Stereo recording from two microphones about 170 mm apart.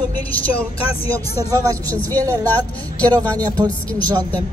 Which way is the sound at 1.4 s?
20° right (ahead or behind).